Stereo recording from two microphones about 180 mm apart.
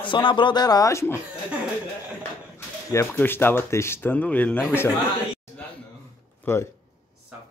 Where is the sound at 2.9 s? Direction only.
15° left (ahead or behind).